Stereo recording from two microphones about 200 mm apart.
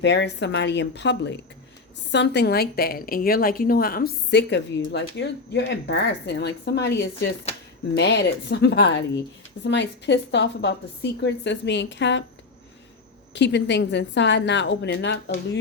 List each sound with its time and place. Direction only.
0.0 s a woman's voice: 65° left (ahead or behind)
7.5 s speech: 30° left (ahead or behind)
7.9 s a woman's voice: 60° left (ahead or behind)
13.3 s a woman's voice: 60° left (ahead or behind)